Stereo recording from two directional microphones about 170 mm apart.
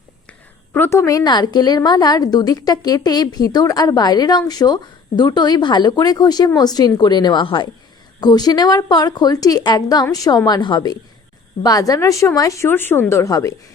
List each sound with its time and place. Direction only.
0.3 s a woman's voice: 10° left (ahead or behind)